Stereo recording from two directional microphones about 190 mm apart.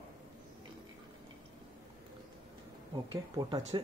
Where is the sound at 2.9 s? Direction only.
20° right (ahead or behind).